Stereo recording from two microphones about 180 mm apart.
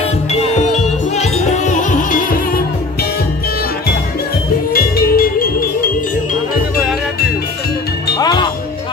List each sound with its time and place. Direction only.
0.3 s music: 40° left (ahead or behind)
4.7 s music: 55° left (ahead or behind)
8.2 s music: 25° left (ahead or behind)